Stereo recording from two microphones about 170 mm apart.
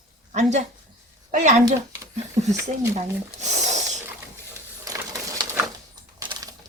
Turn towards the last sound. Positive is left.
turn(degrees=-20)  # may be behind; listen again after turning